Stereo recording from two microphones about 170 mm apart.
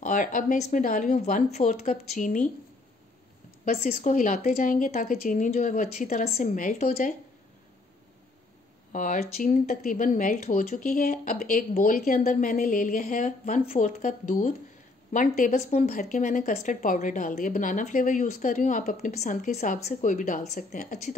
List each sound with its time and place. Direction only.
0.0 s a woman's voice: 50° left (ahead or behind)
3.7 s a woman's voice: 45° left (ahead or behind)
8.9 s a woman's voice: 50° left (ahead or behind)